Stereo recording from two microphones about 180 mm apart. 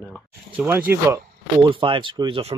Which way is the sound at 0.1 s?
10° right (ahead or behind).